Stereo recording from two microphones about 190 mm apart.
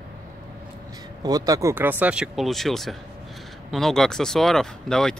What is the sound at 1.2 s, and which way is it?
Speech, 20° right (ahead or behind).